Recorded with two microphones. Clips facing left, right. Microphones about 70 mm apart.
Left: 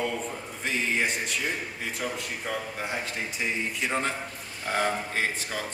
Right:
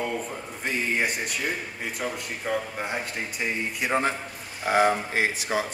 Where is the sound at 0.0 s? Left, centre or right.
Centre.